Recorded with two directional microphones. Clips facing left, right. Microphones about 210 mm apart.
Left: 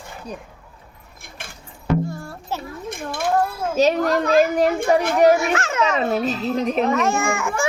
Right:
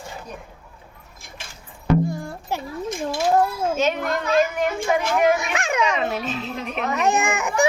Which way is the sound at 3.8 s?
35° left (ahead or behind).